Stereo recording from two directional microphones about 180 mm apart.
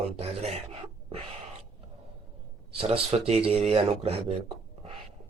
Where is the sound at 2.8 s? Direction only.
35° right (ahead or behind).